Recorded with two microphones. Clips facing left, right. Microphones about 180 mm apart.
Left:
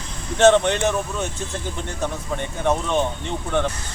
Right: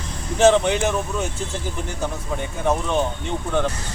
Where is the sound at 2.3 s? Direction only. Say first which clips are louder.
Even; 5° right (ahead or behind).